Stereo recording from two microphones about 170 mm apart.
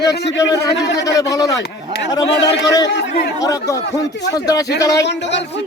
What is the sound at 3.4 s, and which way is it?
A man's voice, 20° left (ahead or behind).